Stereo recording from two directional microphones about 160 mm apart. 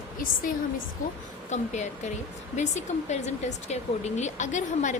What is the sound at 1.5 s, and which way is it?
Speech, 45° left (ahead or behind).